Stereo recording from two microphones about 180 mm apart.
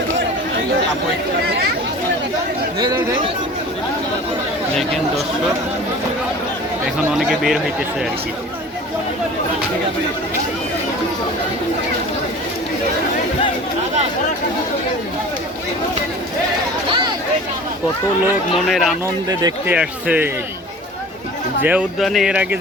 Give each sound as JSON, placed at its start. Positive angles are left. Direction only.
{"t": 7.1, "sound": "speech", "side_deg": 0}
{"t": 18.7, "sound": "speech", "side_deg": 0}
{"t": 19.0, "sound": "speech", "side_deg": -20}
{"t": 19.7, "sound": "speech", "side_deg": -5}
{"t": 21.6, "sound": "speech", "side_deg": -10}